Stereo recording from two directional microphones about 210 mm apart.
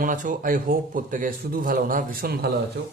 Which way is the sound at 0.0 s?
40° right (ahead or behind).